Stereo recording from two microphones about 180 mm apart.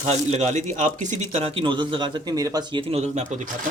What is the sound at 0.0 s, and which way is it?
Speech, 35° right (ahead or behind).